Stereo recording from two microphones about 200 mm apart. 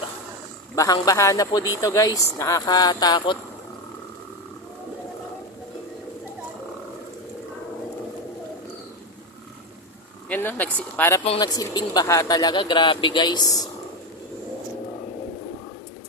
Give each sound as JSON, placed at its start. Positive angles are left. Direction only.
{"t": 0.8, "sound": "speech", "side_deg": 15}
{"t": 10.2, "sound": "speech", "side_deg": 10}
{"t": 11.3, "sound": "speech", "side_deg": 20}